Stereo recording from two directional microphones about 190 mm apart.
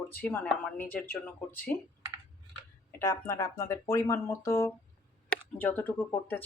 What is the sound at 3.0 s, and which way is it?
Speech, 15° left (ahead or behind).